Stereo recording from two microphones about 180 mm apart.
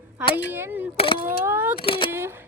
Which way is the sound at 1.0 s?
30° left (ahead or behind).